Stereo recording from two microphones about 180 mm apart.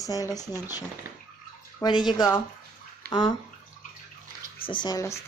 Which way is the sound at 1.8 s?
25° left (ahead or behind).